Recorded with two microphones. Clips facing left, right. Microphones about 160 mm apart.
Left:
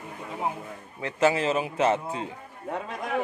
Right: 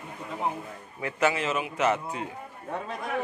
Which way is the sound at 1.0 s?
30° left (ahead or behind).